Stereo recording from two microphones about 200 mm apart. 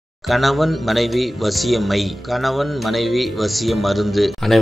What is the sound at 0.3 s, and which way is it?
Speech, centre (ahead or behind).